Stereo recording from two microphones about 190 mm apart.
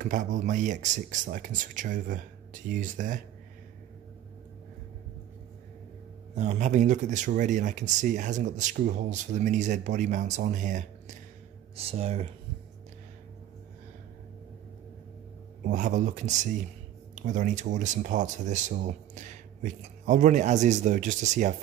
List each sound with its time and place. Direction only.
0.0 s speech: 45° right (ahead or behind)
6.3 s speech: 35° right (ahead or behind)
15.6 s speech: 40° right (ahead or behind)